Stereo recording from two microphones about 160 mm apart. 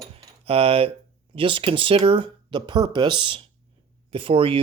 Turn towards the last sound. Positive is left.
turn(degrees=-35)  # may be behind; listen again after turning